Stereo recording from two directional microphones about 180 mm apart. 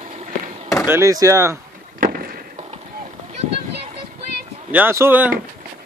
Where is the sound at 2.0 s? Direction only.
55° right (ahead or behind).